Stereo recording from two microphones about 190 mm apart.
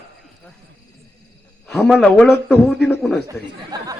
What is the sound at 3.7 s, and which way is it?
Speech, 20° right (ahead or behind).